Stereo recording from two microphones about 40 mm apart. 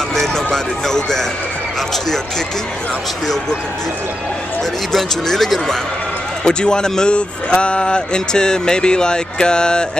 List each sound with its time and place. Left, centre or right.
0.1 s speech: centre
4.9 s speech: centre
6.4 s speech: centre